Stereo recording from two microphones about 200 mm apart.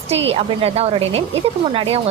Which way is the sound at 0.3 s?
30° right (ahead or behind).